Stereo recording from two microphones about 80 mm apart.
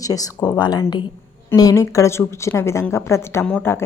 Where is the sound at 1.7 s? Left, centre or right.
Left.